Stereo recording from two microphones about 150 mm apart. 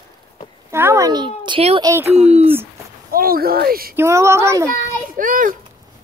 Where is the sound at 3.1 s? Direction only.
80° right.